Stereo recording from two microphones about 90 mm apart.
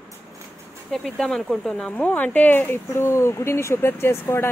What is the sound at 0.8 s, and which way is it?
Speech, centre (ahead or behind).